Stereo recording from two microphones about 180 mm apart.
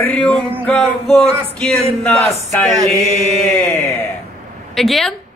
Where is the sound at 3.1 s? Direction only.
35° right (ahead or behind).